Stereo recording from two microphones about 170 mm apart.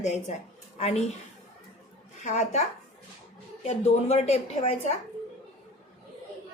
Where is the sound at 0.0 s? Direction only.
40° left (ahead or behind).